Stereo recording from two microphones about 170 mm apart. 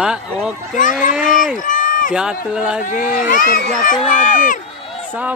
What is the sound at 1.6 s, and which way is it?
Run, 50° left (ahead or behind).